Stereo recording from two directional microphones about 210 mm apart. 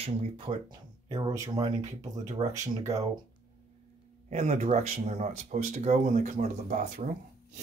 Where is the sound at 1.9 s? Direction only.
35° right (ahead or behind).